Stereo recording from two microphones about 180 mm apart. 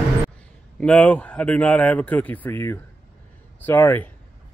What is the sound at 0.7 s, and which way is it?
Speech, 5° left (ahead or behind).